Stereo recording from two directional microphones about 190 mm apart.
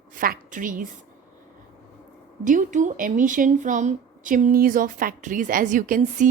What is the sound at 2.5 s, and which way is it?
Speech, 40° right (ahead or behind).